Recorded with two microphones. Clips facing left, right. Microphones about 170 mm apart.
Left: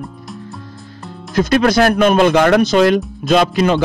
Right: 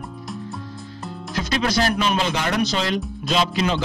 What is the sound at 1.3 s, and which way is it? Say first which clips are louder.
Speech: left 10 dB; 50° left (ahead or behind).